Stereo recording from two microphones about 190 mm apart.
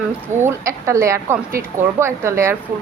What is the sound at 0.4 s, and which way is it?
A woman's voice, 15° right (ahead or behind).